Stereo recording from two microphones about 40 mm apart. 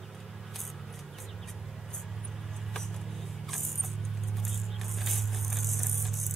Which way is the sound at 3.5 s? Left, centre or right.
Centre.